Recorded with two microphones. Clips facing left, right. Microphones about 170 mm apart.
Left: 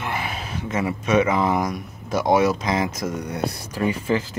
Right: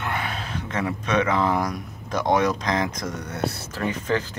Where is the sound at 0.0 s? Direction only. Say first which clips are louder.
Left 1 dB; 5° left (ahead or behind).